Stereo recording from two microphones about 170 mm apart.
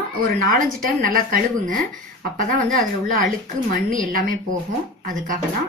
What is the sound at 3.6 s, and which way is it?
Speech, 55° right (ahead or behind).